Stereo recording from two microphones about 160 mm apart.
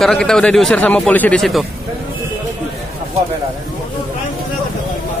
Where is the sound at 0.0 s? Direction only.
5° left (ahead or behind).